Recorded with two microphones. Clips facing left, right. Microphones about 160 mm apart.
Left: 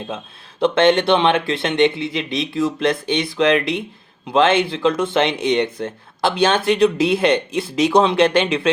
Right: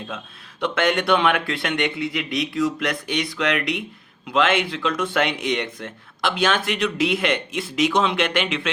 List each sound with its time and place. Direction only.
0.6 s speech: 25° left (ahead or behind)